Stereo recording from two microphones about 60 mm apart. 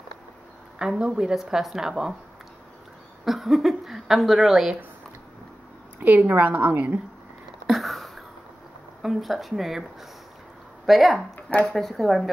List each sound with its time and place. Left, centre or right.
0.7 s speech: centre
3.3 s speech: centre
5.9 s a woman's voice: right
7.6 s a sound: centre
9.0 s speech: centre
10.9 s speech: centre